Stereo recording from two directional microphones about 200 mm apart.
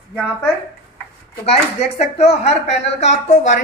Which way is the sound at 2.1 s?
30° left (ahead or behind).